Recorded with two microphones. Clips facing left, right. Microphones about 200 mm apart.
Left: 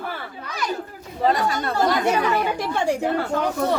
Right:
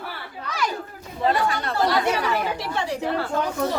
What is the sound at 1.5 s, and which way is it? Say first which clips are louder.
A woman's voice: left 1 dB; 40° left (ahead or behind).